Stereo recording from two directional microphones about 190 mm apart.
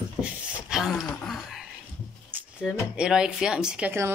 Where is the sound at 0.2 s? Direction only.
5° right (ahead or behind).